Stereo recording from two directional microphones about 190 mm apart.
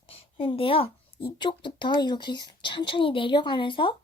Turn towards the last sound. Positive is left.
turn(degrees=25)  # may be behind; listen again after turning